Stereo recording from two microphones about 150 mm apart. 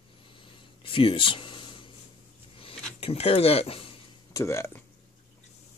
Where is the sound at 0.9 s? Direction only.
35° left (ahead or behind).